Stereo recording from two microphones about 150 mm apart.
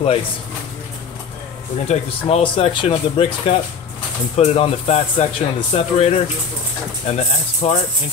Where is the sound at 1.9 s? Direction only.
45° left (ahead or behind).